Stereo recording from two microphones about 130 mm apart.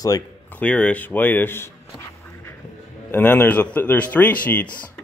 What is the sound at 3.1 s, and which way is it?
Speech, 15° left (ahead or behind).